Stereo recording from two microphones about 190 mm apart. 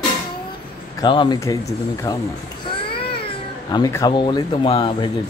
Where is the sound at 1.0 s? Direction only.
25° left (ahead or behind).